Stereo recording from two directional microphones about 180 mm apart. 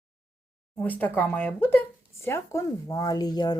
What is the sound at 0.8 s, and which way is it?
Speech, 10° left (ahead or behind).